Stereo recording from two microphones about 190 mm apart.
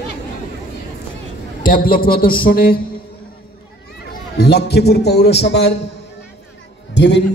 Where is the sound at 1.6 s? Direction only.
45° left (ahead or behind).